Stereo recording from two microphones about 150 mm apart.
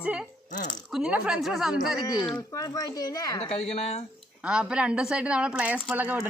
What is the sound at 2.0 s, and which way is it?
A child's voice, 25° left (ahead or behind).